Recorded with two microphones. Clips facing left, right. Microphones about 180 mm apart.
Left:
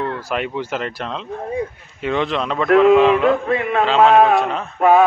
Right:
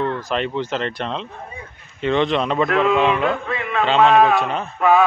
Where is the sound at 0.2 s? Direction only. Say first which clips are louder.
Right 1 dB; 10° left (ahead or behind).